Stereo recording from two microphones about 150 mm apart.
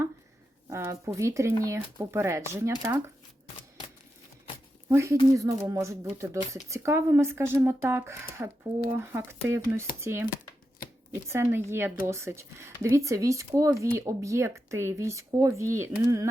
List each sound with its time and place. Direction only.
0.7 s speech: 20° right (ahead or behind)
4.9 s speech: 15° right (ahead or behind)
11.3 s speech: 15° right (ahead or behind)